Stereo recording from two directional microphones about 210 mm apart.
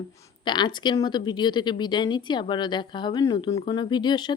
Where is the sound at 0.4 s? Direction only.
20° left (ahead or behind).